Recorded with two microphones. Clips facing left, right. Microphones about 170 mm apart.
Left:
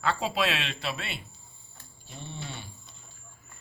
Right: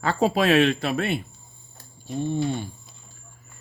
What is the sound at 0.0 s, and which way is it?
Speech, 45° right (ahead or behind).